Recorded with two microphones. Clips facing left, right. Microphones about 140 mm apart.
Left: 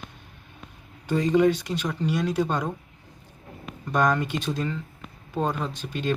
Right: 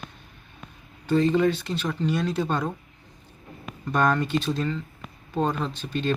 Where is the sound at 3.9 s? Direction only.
10° left (ahead or behind).